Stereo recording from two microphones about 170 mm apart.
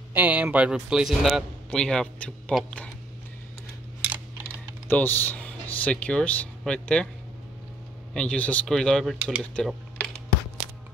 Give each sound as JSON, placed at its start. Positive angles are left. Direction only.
{"t": 0.1, "sound": "a man's voice", "side_deg": -10}
{"t": 4.8, "sound": "speech", "side_deg": 10}
{"t": 8.1, "sound": "speech", "side_deg": 5}